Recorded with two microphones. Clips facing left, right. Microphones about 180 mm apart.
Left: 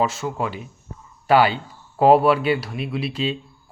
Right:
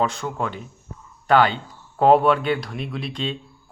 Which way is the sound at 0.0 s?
5° left (ahead or behind).